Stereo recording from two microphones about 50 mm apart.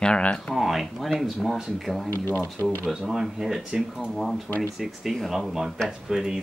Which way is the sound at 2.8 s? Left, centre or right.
Centre.